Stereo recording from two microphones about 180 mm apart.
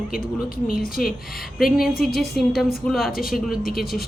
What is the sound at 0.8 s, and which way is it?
Speech, 55° left (ahead or behind).